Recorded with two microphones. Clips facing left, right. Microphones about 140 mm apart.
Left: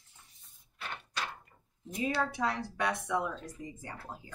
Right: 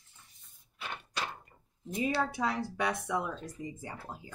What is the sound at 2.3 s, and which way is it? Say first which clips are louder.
Speech: right 1 dB; 5° right (ahead or behind).